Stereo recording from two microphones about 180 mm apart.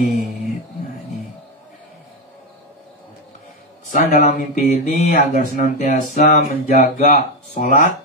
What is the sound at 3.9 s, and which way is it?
Speech, 50° left (ahead or behind).